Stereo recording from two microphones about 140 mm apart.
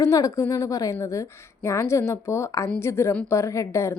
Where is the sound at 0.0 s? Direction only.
25° left (ahead or behind).